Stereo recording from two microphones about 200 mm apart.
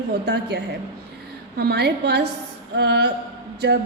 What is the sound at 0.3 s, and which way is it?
Speech, 60° right (ahead or behind).